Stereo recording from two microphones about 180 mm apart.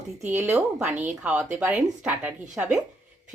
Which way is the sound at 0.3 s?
15° right (ahead or behind).